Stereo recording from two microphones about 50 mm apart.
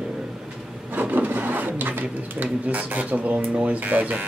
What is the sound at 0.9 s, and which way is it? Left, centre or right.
Speech, right.